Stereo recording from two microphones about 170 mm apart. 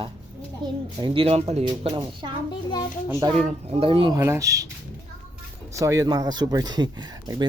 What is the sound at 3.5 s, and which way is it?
Speech, 35° right (ahead or behind).